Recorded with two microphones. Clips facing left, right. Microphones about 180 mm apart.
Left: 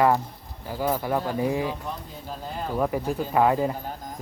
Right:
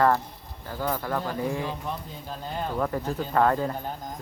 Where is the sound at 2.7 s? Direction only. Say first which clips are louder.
Left 4 dB; 10° left (ahead or behind).